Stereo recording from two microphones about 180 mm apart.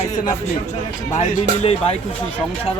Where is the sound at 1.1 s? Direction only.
35° left (ahead or behind).